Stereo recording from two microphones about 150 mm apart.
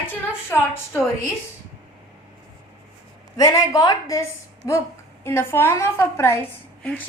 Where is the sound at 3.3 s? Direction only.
20° left (ahead or behind).